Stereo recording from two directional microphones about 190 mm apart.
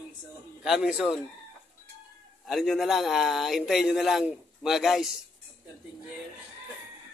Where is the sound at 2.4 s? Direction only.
Centre (ahead or behind).